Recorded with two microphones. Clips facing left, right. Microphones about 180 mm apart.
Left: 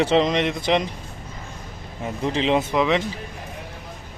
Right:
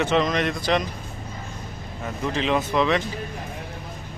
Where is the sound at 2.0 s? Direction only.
25° left (ahead or behind).